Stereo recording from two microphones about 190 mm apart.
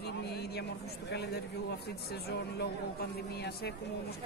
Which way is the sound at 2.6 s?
60° left (ahead or behind).